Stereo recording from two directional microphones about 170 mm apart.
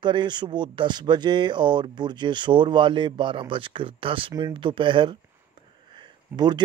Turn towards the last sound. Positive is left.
turn(degrees=-25)  # may be behind; listen again after turning